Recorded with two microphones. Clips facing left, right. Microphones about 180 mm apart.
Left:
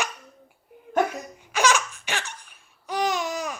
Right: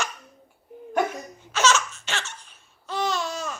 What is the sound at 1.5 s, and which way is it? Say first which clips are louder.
Laughter: even; 15° left (ahead or behind).